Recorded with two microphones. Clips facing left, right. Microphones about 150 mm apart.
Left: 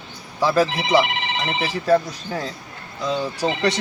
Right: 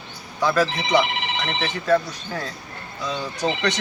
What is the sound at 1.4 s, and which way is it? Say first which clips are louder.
Speech: left 2 dB; 5° left (ahead or behind).